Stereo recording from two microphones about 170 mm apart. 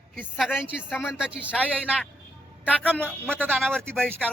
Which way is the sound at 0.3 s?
5° right (ahead or behind).